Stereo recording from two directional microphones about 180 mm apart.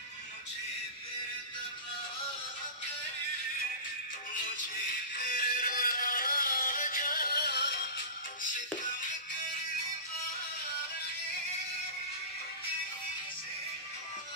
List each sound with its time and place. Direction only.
5.1 s music: 50° left (ahead or behind); by 7.8 s 65° left (ahead or behind)